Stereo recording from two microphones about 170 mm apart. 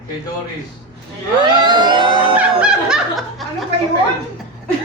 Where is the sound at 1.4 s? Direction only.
25° right (ahead or behind).